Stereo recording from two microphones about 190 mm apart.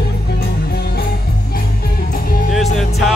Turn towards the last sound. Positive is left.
turn(degrees=0)  # may be behind; listen again after turning